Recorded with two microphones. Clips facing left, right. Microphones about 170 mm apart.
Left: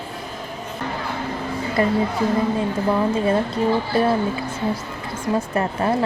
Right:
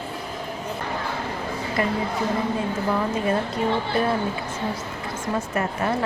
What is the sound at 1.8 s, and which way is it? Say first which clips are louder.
Speech: left 5 dB; 30° left (ahead or behind).